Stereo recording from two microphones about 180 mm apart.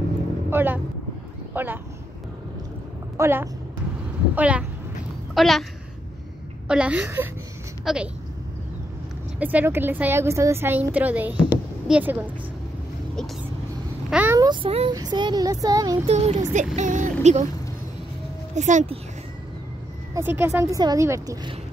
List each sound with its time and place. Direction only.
0.5 s a sound: 10° right (ahead or behind)
1.5 s speech: 10° right (ahead or behind)
3.2 s a woman's voice: 10° right (ahead or behind)
6.7 s a woman's voice: 5° right (ahead or behind)
9.4 s a woman's voice: 10° right (ahead or behind)
11.5 s a sound: 10° right (ahead or behind)
14.1 s a woman's voice: 10° right (ahead or behind)
14.4 s speech: 25° right (ahead or behind)
16.1 s speech: 35° right (ahead or behind)
18.5 s speech: 40° right (ahead or behind)
20.2 s a woman's voice: 15° right (ahead or behind)